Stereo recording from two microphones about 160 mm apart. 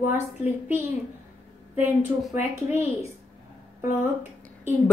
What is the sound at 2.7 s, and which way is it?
Speech, 15° right (ahead or behind).